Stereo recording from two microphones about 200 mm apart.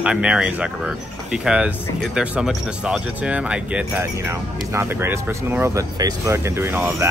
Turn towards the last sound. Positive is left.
turn(degrees=-10)  # may be behind; listen again after turning